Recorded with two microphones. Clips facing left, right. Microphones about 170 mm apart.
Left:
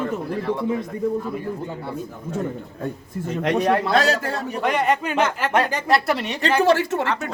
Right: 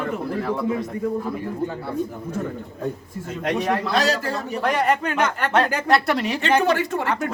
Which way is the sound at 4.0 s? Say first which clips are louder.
Left 1 dB; 55° left (ahead or behind).